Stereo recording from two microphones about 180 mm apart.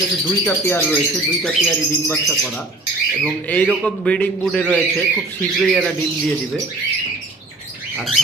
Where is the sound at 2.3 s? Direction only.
5° left (ahead or behind).